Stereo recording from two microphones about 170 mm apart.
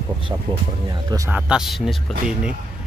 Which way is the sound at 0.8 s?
20° right (ahead or behind).